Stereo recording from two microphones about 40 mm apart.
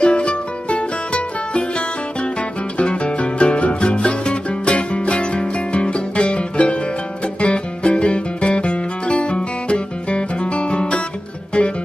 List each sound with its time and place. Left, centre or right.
0.0 s music: left
2.8 s music: left